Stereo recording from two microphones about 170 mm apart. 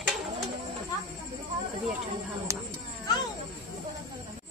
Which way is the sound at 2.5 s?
15° right (ahead or behind).